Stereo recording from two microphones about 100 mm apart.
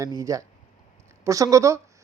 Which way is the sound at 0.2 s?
35° right (ahead or behind).